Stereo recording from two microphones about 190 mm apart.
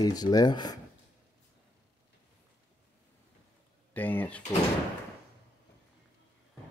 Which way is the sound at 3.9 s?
10° left (ahead or behind).